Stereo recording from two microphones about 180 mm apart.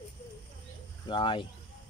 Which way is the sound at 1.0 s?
25° left (ahead or behind).